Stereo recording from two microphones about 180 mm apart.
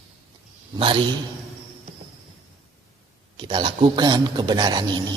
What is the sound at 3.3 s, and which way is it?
A man's voice, 30° right (ahead or behind).